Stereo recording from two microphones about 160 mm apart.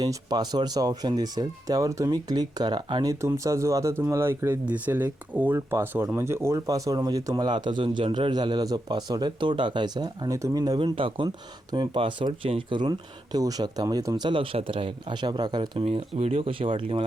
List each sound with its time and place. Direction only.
0.0 s speech: 25° right (ahead or behind)
15.8 s speech: 40° right (ahead or behind)